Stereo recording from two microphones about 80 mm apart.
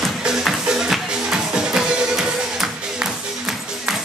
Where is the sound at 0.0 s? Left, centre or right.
Centre.